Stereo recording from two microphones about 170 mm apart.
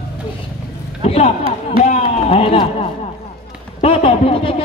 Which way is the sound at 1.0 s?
40° left (ahead or behind).